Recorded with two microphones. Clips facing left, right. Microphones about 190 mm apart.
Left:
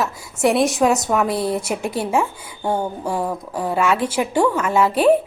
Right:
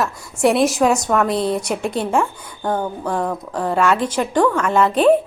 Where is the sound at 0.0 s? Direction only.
Centre (ahead or behind).